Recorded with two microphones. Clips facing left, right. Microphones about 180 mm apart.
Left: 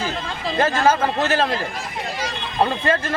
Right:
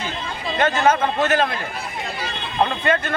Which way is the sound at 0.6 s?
30° left (ahead or behind).